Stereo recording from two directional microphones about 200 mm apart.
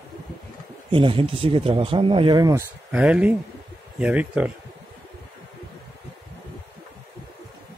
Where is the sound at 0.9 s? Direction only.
25° right (ahead or behind).